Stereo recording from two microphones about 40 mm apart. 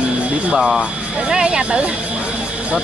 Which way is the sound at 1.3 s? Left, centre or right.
Right.